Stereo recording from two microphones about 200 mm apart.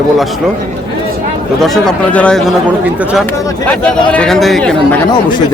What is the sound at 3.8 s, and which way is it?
Speech, 5° left (ahead or behind).